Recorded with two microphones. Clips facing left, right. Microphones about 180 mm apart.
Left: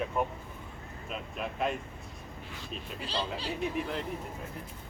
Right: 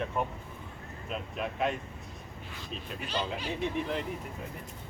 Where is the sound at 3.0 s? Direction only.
35° left (ahead or behind).